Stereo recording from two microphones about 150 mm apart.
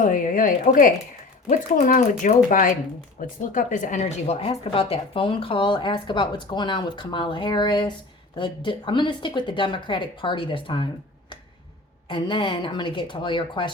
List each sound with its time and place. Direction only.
0.0 s a woman's voice: 65° left (ahead or behind); by 10.8 s 35° left (ahead or behind)
12.0 s a woman's voice: 35° left (ahead or behind)